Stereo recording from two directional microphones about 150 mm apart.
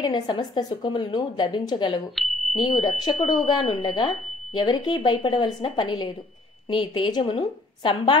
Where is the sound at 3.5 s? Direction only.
30° left (ahead or behind).